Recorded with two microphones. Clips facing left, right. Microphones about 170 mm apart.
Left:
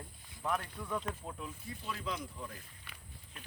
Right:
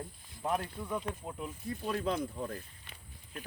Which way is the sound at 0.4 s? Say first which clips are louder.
Right 3 dB; 25° right (ahead or behind).